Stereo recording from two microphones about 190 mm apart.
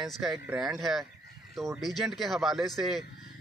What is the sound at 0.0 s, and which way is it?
Speech, centre (ahead or behind).